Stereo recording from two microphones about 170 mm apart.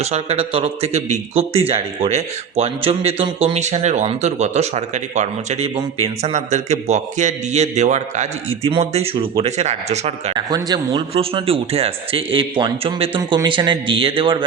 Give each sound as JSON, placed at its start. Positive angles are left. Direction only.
{"t": 0.0, "sound": "a man's voice", "side_deg": -40}
{"t": 10.3, "sound": "a man's voice", "side_deg": -25}